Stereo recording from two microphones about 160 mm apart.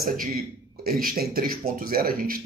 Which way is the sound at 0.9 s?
70° right (ahead or behind).